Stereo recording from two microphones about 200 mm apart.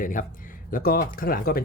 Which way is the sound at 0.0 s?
40° left (ahead or behind).